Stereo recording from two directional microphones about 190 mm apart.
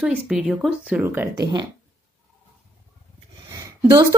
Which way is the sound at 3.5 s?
20° right (ahead or behind).